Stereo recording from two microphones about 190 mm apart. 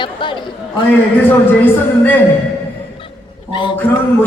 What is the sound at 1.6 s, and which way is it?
Speech, 10° left (ahead or behind).